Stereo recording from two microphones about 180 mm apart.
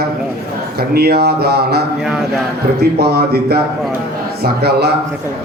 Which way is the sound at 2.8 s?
60° right (ahead or behind).